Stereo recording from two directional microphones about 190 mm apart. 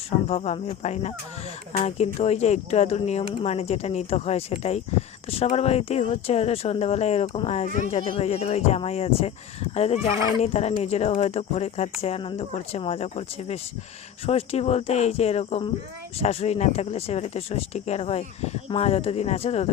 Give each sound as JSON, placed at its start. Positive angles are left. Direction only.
{"t": 0.3, "sound": "speech", "side_deg": 35}